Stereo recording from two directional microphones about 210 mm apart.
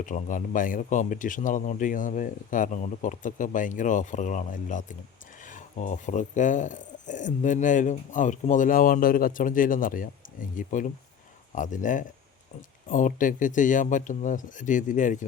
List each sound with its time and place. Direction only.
0.0 s speech: 40° left (ahead or behind)